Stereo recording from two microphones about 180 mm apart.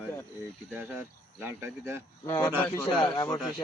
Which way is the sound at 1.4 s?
15° right (ahead or behind).